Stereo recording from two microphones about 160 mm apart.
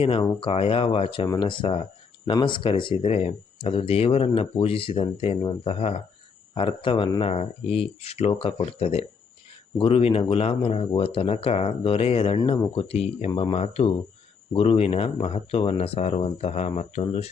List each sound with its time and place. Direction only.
0.0 s speech: 35° left (ahead or behind)